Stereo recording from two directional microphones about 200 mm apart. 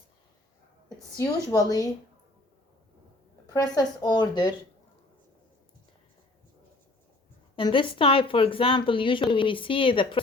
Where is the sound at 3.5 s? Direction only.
20° left (ahead or behind).